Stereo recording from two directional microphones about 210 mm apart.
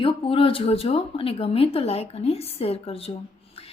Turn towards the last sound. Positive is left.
turn(degrees=30)  # may be behind; listen again after turning